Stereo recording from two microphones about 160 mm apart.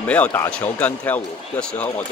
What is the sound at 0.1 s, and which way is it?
Speech, 10° left (ahead or behind).